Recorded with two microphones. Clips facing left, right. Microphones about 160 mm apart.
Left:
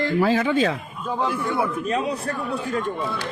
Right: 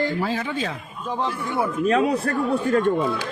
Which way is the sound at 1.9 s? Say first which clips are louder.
Right 4 dB; 65° right (ahead or behind).